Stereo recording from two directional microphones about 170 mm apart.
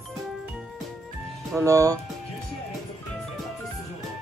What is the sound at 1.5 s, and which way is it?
Speech, 20° right (ahead or behind).